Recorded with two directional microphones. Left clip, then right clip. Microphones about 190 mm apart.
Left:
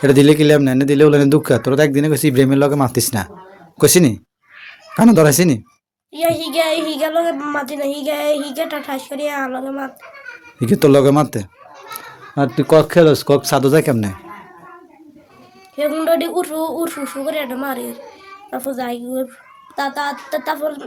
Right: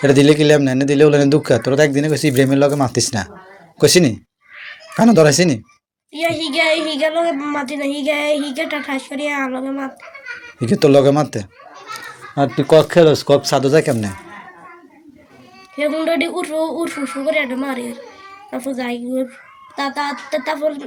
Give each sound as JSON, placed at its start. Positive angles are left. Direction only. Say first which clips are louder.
{"t": 0.0, "sound": "speech", "louder": "left 1 dB", "side_deg": 25}
{"t": 10.6, "sound": "speech", "louder": "even", "side_deg": 30}
{"t": 15.7, "sound": "speech", "louder": "left 2 dB", "side_deg": 25}